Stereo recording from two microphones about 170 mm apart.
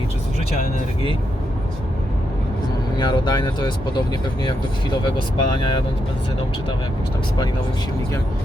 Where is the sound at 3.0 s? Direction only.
25° left (ahead or behind).